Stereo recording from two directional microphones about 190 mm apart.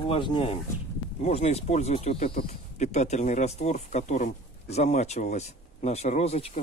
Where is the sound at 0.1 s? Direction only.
25° left (ahead or behind).